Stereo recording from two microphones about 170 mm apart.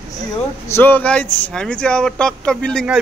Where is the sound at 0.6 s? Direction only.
15° left (ahead or behind).